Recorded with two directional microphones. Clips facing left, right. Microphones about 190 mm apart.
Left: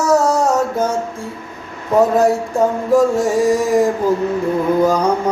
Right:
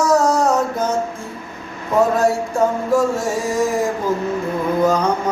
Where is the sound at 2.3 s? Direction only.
15° left (ahead or behind).